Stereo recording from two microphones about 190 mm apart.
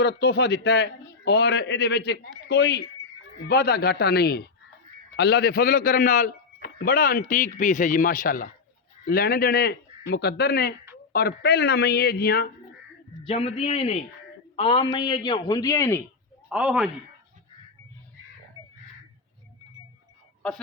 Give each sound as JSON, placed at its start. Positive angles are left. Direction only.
{"t": 0.0, "sound": "a man's voice", "side_deg": 60}
{"t": 13.2, "sound": "a man's voice", "side_deg": 30}
{"t": 16.5, "sound": "speech", "side_deg": -5}